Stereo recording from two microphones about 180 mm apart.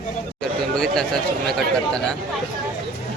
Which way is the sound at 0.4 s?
5° left (ahead or behind).